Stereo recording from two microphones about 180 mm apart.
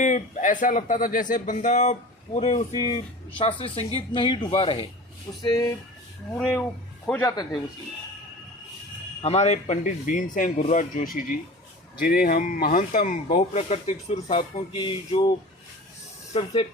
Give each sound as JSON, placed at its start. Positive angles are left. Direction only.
{"t": 0.0, "sound": "speech", "side_deg": 45}
{"t": 5.4, "sound": "speech", "side_deg": 20}
{"t": 9.2, "sound": "speech", "side_deg": 35}